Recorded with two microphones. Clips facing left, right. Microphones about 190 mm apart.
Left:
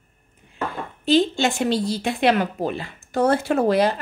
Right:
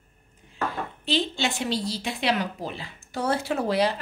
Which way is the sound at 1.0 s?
45° left (ahead or behind).